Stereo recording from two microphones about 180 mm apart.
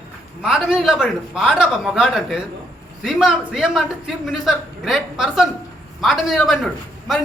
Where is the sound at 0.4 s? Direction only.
Centre (ahead or behind).